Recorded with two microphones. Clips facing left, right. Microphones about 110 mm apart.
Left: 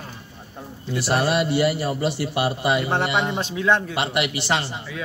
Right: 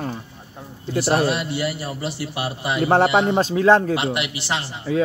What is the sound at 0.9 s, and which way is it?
Speech, 35° right (ahead or behind).